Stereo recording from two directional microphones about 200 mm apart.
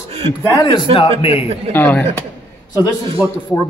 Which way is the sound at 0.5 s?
20° left (ahead or behind).